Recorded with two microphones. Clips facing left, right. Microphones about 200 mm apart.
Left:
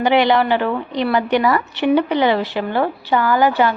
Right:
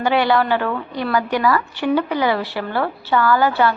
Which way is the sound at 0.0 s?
20° left (ahead or behind).